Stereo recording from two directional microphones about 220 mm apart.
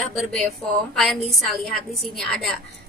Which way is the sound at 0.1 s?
Centre (ahead or behind).